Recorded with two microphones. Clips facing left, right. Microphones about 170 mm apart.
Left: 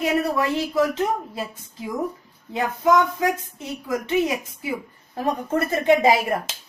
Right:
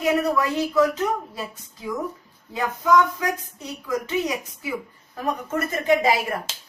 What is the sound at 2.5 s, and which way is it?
A woman's voice, 25° left (ahead or behind).